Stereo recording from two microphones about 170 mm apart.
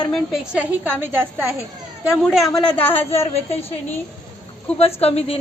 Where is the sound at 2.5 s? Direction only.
10° left (ahead or behind).